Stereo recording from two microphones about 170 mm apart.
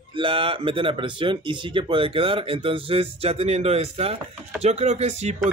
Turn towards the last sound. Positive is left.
turn(degrees=-40)  # may be behind; listen again after turning